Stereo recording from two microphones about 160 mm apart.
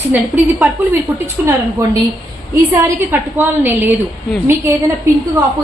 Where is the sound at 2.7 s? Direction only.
20° right (ahead or behind).